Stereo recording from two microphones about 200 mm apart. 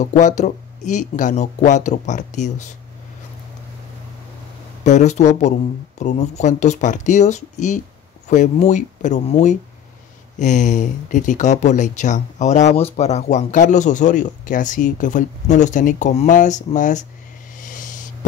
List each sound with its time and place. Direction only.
0.0 s speech: 40° left (ahead or behind)
4.8 s speech: 35° left (ahead or behind)
17.6 s owl: 40° left (ahead or behind)